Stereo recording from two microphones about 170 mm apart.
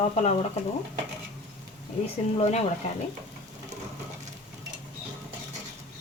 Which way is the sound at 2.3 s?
40° left (ahead or behind).